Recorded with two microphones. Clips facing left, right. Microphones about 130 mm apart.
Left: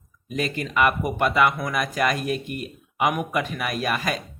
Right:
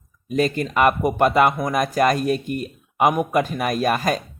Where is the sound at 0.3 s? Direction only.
40° right (ahead or behind).